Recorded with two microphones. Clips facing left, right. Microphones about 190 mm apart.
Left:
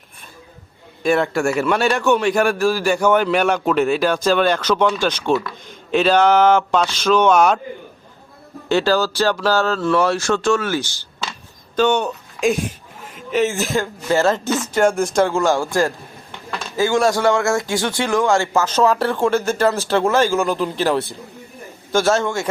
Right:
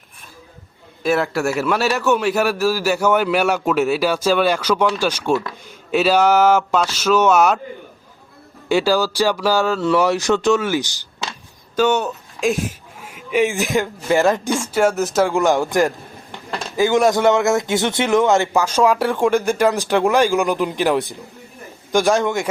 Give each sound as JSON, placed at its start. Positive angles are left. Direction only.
{"t": 1.0, "sound": "a man's voice", "side_deg": 0}
{"t": 8.7, "sound": "speech", "side_deg": -10}
{"t": 15.3, "sound": "speech", "side_deg": -20}